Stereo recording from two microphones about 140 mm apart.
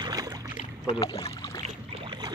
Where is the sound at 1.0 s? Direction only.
25° left (ahead or behind).